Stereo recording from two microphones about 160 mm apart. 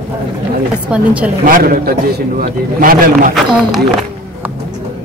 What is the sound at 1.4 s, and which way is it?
A man's voice, 65° right (ahead or behind).